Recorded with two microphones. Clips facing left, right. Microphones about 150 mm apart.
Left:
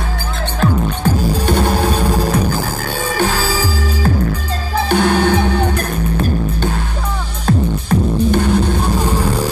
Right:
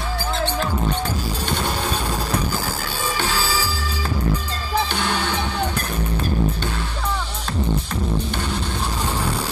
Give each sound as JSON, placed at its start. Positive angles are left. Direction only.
{"t": 0.6, "sound": "music", "side_deg": 50}
{"t": 7.4, "sound": "music", "side_deg": 50}